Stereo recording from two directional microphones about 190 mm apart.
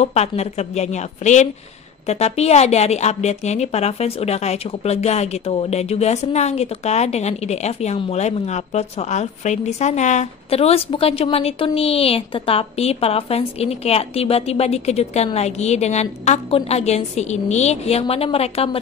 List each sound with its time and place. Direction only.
0.0 s a woman's voice: 35° left (ahead or behind)